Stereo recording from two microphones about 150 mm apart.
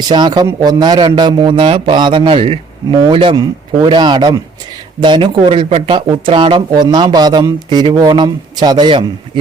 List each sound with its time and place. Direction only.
0.1 s a man's voice: 30° right (ahead or behind)